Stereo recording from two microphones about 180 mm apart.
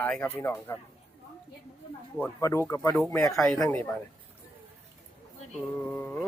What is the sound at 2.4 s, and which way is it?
Speech, 15° left (ahead or behind).